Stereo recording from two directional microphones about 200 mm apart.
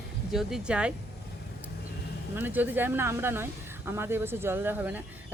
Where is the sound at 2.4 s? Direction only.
10° right (ahead or behind).